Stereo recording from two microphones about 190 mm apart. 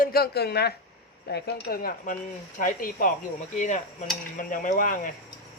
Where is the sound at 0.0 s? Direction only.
55° left (ahead or behind).